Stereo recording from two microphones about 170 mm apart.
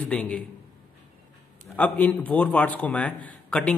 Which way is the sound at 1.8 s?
10° left (ahead or behind).